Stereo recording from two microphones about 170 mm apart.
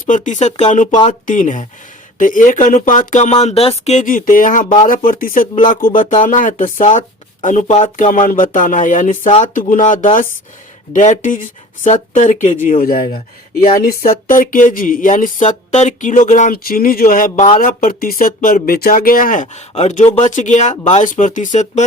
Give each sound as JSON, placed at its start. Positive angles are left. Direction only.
{"t": 0.0, "sound": "speech", "side_deg": 50}
{"t": 12.8, "sound": "speech", "side_deg": 60}